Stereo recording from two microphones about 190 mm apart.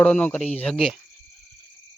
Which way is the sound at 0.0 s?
5° left (ahead or behind).